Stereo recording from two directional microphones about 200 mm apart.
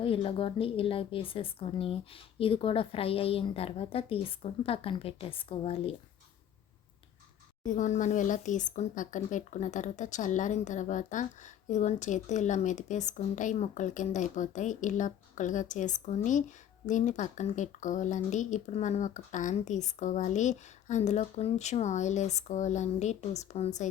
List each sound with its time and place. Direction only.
0.0 s a woman's voice: 25° left (ahead or behind)
7.6 s speech: 40° left (ahead or behind)